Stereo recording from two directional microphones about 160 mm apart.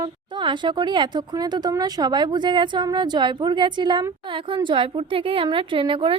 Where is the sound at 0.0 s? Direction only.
30° right (ahead or behind).